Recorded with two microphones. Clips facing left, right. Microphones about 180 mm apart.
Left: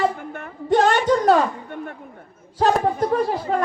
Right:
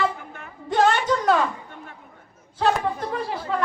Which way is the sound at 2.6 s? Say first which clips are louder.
Left 4 dB; 40° left (ahead or behind).